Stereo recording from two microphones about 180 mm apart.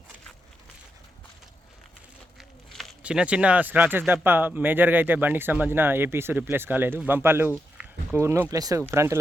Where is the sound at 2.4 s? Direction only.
5° right (ahead or behind).